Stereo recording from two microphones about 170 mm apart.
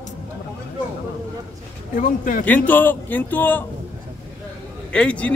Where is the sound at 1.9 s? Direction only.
55° left (ahead or behind).